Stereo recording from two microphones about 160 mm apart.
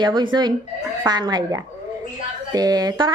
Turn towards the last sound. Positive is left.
turn(degrees=-25)  # may be behind; listen again after turning